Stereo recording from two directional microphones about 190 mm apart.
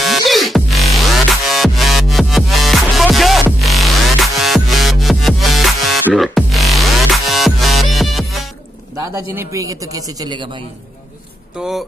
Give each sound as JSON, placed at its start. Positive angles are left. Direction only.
{"t": 0.0, "sound": "music", "side_deg": 0}
{"t": 8.9, "sound": "a man's voice", "side_deg": -15}
{"t": 11.6, "sound": "speech", "side_deg": -5}